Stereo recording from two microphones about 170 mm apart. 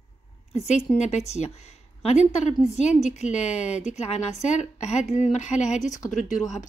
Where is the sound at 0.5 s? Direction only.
40° left (ahead or behind).